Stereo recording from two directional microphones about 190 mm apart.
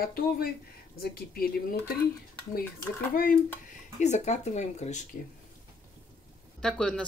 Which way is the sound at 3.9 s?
35° left (ahead or behind).